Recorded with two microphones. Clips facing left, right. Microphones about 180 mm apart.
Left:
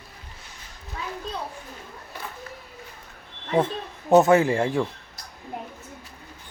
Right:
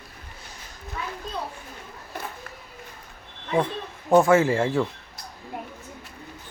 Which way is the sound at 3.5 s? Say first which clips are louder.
Left 1 dB; 25° left (ahead or behind).